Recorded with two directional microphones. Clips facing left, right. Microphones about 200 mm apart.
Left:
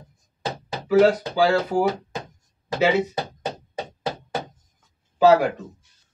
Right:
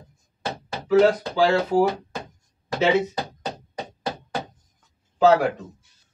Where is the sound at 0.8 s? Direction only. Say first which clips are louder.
Left 1 dB; 10° left (ahead or behind).